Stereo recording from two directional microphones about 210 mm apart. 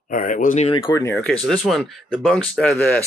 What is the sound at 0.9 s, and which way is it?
Speech, 10° left (ahead or behind).